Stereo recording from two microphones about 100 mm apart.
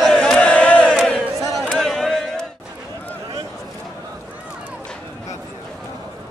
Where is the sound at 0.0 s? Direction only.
5° left (ahead or behind).